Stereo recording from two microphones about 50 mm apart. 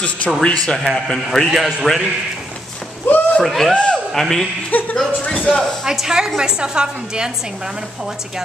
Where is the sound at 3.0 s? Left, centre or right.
Left.